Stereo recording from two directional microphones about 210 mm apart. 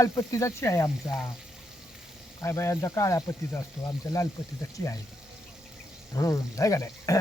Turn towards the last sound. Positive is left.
turn(degrees=15)  # may be behind; listen again after turning